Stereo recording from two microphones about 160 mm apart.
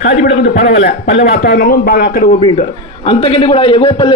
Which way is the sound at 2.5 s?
35° left (ahead or behind).